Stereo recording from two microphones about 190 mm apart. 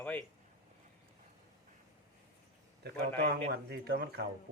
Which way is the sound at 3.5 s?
60° right (ahead or behind).